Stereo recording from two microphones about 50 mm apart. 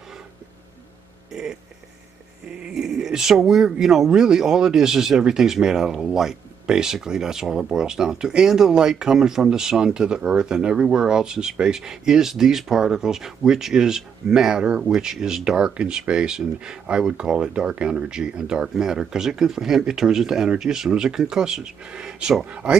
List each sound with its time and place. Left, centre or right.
1.3 s speech: centre
2.7 s speech: centre